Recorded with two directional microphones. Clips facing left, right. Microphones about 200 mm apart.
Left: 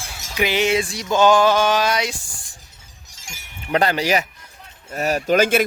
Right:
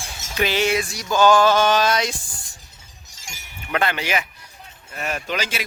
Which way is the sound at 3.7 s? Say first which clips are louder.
Left 4 dB; 40° left (ahead or behind).